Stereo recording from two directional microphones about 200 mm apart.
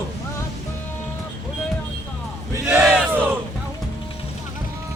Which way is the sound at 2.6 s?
5° right (ahead or behind).